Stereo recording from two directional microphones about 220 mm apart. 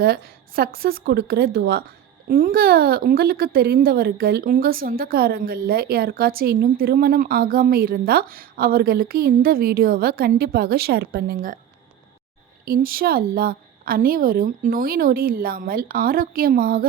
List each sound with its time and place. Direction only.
0.0 s speech: 45° right (ahead or behind)
12.6 s a woman's voice: 40° right (ahead or behind)